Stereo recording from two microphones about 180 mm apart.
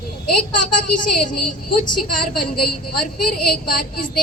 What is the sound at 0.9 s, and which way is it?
Speech, 45° left (ahead or behind).